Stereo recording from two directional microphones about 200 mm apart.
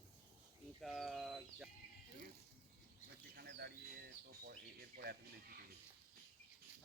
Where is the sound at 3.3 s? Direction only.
55° right (ahead or behind).